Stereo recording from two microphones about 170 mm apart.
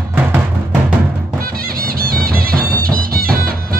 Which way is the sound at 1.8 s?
60° right (ahead or behind).